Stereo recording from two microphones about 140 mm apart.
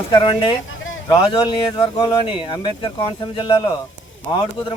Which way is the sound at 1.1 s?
30° left (ahead or behind).